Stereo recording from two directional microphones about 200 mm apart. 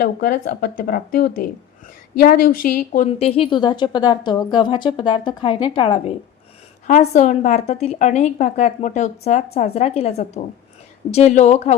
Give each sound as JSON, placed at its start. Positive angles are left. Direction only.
{"t": 0.0, "sound": "speech", "side_deg": 50}
{"t": 3.1, "sound": "a woman's voice", "side_deg": 30}
{"t": 6.8, "sound": "a woman's voice", "side_deg": 35}